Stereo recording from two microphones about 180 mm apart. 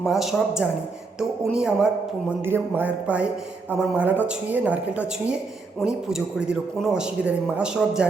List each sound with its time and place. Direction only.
0.0 s a man's voice: centre (ahead or behind)